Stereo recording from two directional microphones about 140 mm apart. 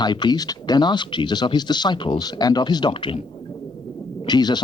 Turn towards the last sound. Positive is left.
turn(degrees=30)  # may be behind; listen again after turning